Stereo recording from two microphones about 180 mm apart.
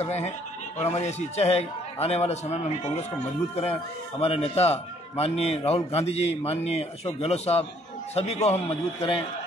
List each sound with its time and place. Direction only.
0.0 s a man's voice: 35° left (ahead or behind)